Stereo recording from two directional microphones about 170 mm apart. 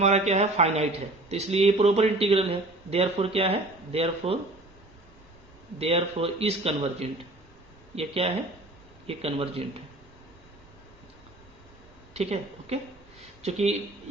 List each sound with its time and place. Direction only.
0.0 s speech: 40° right (ahead or behind)
5.8 s speech: 35° right (ahead or behind)
12.1 s a woman's voice: 40° right (ahead or behind)